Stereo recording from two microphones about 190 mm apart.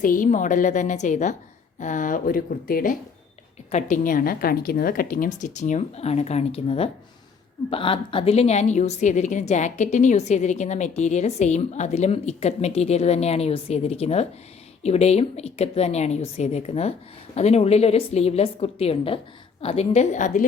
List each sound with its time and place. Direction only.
0.0 s a woman's voice: 45° left (ahead or behind)